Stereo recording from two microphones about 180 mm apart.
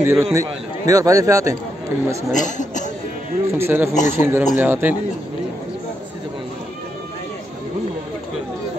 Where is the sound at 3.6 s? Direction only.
15° right (ahead or behind).